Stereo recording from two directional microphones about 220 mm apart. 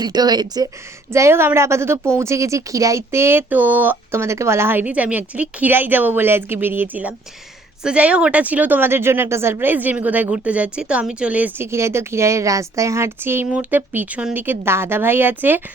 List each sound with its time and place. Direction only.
0.0 s a woman's voice: 20° right (ahead or behind)